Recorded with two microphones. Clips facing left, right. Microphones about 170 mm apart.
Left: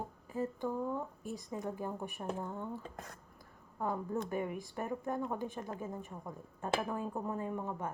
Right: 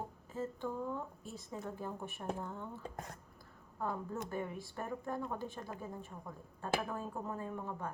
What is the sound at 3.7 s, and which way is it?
A woman's voice, 15° left (ahead or behind).